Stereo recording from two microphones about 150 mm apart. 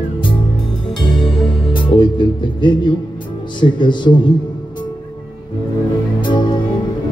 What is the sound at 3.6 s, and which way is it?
Speech, 30° left (ahead or behind).